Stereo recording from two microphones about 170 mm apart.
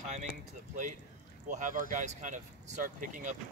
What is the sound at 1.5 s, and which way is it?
Speech, 50° right (ahead or behind).